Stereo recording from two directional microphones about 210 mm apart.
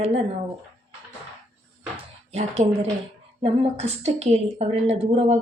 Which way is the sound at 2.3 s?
30° right (ahead or behind).